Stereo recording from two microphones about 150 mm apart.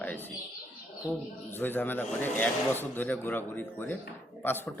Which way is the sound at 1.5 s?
15° left (ahead or behind).